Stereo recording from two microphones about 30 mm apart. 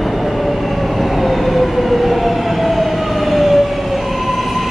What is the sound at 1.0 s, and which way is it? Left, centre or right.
Train, centre.